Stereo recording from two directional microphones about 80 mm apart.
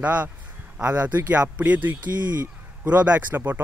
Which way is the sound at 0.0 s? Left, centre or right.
Centre.